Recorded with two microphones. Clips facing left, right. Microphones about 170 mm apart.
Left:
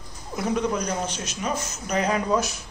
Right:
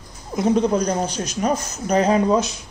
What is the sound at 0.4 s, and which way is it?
A man's voice, 30° right (ahead or behind).